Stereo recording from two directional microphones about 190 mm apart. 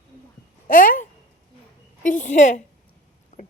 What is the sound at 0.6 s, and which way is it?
A woman's voice, 45° left (ahead or behind).